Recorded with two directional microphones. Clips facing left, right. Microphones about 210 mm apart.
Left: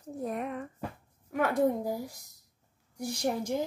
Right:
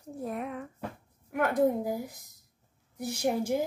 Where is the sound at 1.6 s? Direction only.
20° right (ahead or behind).